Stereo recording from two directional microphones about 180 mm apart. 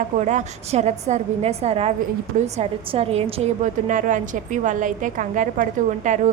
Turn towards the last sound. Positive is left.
turn(degrees=-45)  # may be behind; listen again after turning